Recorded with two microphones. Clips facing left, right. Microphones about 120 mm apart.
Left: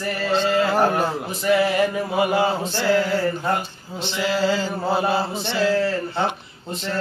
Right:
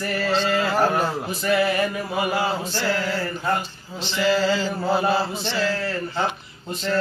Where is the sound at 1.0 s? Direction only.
15° left (ahead or behind).